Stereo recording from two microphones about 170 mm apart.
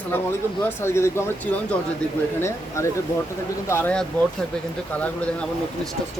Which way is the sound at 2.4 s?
15° left (ahead or behind).